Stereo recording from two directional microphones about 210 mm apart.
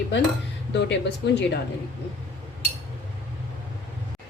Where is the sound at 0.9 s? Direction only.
55° left (ahead or behind).